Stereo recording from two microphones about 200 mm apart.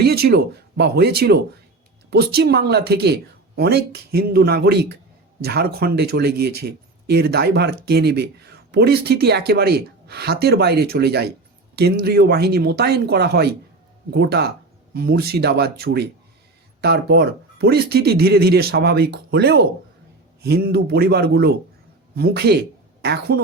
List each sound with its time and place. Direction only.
0.0 s speech: 50° right (ahead or behind)